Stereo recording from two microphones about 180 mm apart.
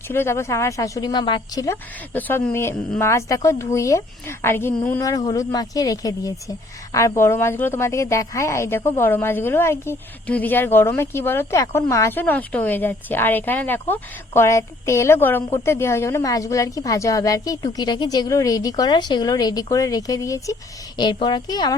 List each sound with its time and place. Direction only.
0.1 s a woman's voice: 15° left (ahead or behind)